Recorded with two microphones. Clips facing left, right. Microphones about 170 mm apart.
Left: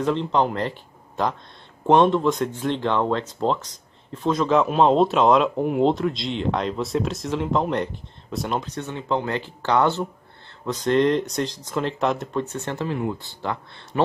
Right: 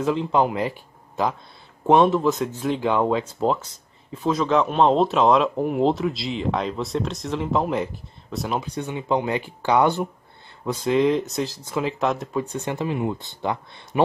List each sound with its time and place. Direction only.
0.0 s speech: 5° right (ahead or behind)
12.4 s speech: 15° right (ahead or behind)